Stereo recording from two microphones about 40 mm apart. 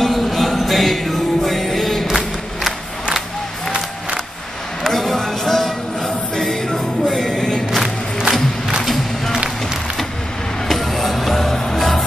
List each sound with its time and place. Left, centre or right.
0.0 s music: centre
4.8 s music: centre
7.7 s crowd: centre
8.8 s music: centre
10.7 s music: centre